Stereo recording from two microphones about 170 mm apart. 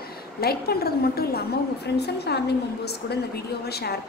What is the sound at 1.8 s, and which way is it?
Speech, 75° left (ahead or behind).